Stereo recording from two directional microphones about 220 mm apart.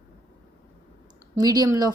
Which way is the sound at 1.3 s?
15° right (ahead or behind).